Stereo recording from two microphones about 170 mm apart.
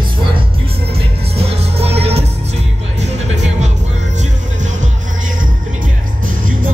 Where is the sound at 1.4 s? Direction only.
35° right (ahead or behind).